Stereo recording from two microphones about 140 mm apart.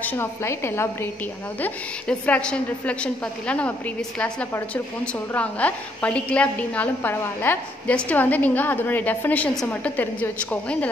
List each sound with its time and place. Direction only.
0.0 s a woman's voice: 20° left (ahead or behind)